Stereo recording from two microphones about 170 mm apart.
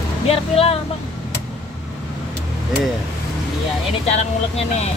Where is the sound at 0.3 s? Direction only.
35° left (ahead or behind).